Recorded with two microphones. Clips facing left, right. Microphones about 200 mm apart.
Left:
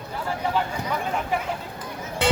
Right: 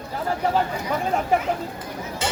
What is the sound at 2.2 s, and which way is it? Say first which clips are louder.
Music: left 7 dB; 60° left (ahead or behind).